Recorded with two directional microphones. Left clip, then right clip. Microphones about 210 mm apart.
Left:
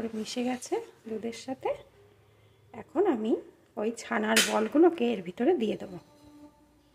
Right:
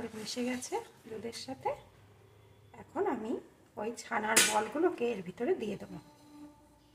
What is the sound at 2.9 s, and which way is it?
Speech, 35° left (ahead or behind).